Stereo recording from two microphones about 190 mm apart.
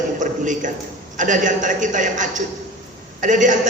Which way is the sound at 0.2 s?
40° right (ahead or behind).